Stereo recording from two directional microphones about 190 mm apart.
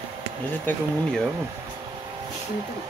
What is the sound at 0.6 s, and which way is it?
Speech, 10° left (ahead or behind).